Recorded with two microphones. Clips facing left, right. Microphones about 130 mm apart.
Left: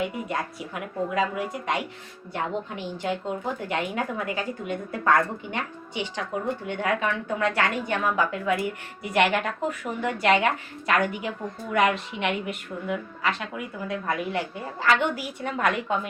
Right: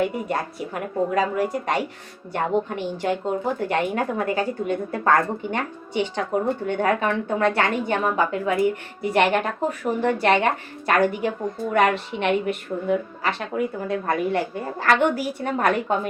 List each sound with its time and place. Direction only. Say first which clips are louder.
0.1 s a woman's voice: right 4 dB; 40° right (ahead or behind)